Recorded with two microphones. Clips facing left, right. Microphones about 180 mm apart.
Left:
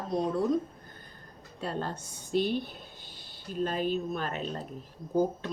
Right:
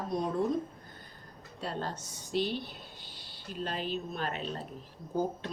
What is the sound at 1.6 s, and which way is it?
Speech, 50° left (ahead or behind).